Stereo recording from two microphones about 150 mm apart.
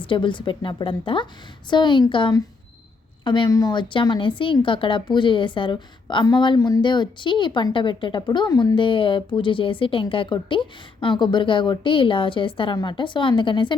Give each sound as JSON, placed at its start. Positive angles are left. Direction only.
{"t": 0.0, "sound": "a woman's voice", "side_deg": 35}